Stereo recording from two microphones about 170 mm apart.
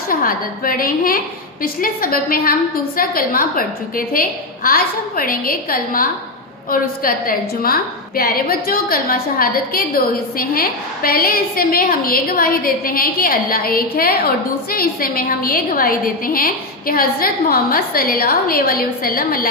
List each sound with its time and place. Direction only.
0.1 s a woman's voice: 55° left (ahead or behind)